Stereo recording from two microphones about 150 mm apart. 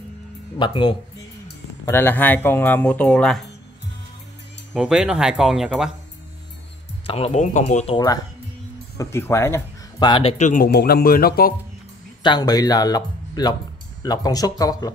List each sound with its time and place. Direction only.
0.6 s speech: 30° left (ahead or behind)
1.9 s speech: 15° left (ahead or behind)
4.7 s speech: 5° right (ahead or behind)
7.1 s speech: 40° left (ahead or behind)
8.9 s speech: 15° left (ahead or behind)
9.9 s speech: 30° left (ahead or behind)
10.3 s speech: 50° left (ahead or behind)
10.6 s speech: 90° left
12.2 s speech: 30° left (ahead or behind)